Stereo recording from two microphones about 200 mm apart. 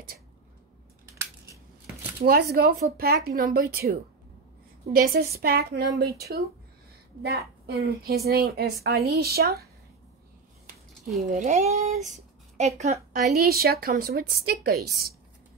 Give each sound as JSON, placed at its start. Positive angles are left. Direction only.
{"t": 2.1, "sound": "speech", "side_deg": -50}
{"t": 4.9, "sound": "speech", "side_deg": -50}
{"t": 11.2, "sound": "speech", "side_deg": -40}
{"t": 13.3, "sound": "speech", "side_deg": -50}